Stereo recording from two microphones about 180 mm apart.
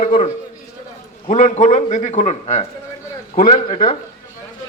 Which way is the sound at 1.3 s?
45° left (ahead or behind).